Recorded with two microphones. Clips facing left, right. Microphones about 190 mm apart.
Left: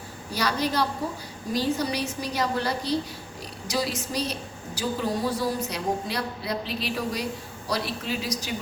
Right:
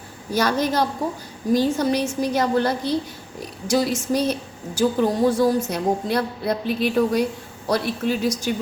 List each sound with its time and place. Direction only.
0.3 s a woman's voice: 45° right (ahead or behind)